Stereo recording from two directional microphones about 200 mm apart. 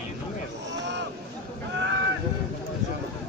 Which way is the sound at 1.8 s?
60° right (ahead or behind).